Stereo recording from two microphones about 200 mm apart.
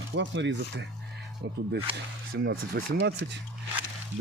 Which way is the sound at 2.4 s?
55° right (ahead or behind).